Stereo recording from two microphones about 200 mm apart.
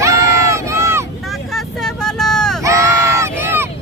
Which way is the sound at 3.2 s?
10° right (ahead or behind).